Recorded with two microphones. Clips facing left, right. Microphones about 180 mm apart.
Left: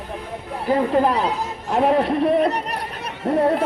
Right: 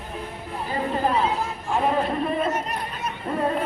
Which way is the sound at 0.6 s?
70° left (ahead or behind).